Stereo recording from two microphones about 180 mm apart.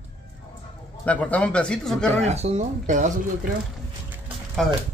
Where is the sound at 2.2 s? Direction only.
35° right (ahead or behind).